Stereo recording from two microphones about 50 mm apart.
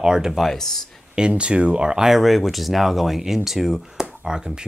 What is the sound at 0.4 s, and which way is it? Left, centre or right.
Speech, centre.